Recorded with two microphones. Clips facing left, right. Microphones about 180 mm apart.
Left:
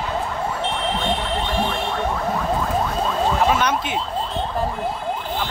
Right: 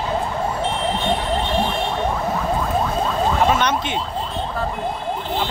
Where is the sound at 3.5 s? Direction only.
5° left (ahead or behind).